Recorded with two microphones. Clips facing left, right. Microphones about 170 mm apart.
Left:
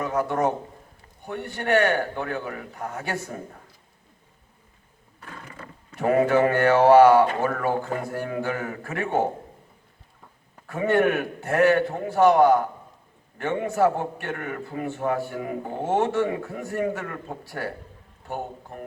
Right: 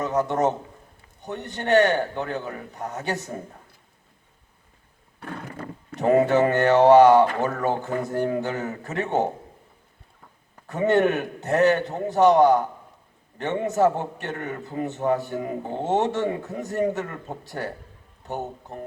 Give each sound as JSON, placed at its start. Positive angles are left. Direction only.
{"t": 0.0, "sound": "a man's voice", "side_deg": -20}
{"t": 5.2, "sound": "a sound", "side_deg": -60}
{"t": 6.0, "sound": "a man's voice", "side_deg": -20}
{"t": 10.7, "sound": "a man's voice", "side_deg": -20}